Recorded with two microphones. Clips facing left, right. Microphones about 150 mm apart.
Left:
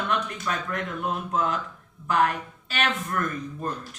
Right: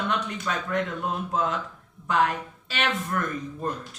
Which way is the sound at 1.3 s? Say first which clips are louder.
Left 1 dB; 25° right (ahead or behind).